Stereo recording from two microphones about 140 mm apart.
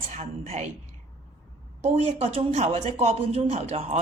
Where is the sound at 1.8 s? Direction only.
45° right (ahead or behind).